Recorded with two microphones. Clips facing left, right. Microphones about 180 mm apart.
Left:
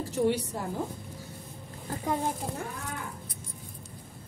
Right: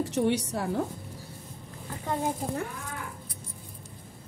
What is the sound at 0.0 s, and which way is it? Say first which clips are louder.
Speech: right 1 dB; 80° right.